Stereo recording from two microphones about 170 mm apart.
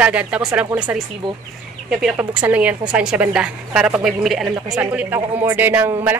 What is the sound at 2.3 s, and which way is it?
Speech, 5° right (ahead or behind).